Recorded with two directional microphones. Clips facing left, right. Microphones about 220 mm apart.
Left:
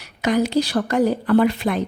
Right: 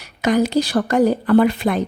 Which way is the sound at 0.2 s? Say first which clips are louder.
Right 2 dB; 45° right (ahead or behind).